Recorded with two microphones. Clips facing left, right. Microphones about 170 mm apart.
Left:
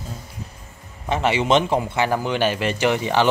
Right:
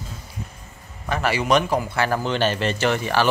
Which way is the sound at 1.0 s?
25° left (ahead or behind).